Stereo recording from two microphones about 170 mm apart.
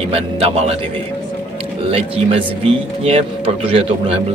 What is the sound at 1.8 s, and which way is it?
Speech, 35° right (ahead or behind).